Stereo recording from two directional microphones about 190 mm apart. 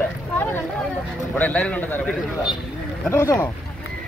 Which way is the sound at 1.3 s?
10° left (ahead or behind).